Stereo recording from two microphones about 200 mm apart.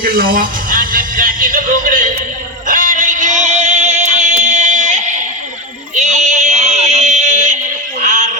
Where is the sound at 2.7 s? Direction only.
40° right (ahead or behind).